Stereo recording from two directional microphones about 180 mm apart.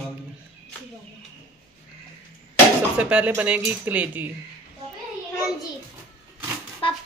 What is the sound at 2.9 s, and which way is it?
Speech, 10° right (ahead or behind).